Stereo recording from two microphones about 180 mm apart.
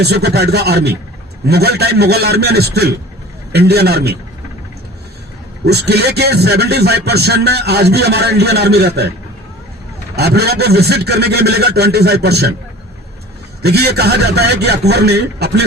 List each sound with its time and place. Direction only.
0.0 s speech: 65° right (ahead or behind)
5.6 s speech: 65° right (ahead or behind)
10.2 s speech: 65° right (ahead or behind)
13.6 s speech: 65° right (ahead or behind)